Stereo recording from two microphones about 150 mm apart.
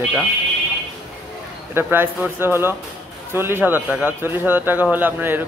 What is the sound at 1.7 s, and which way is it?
A man's voice, 15° right (ahead or behind).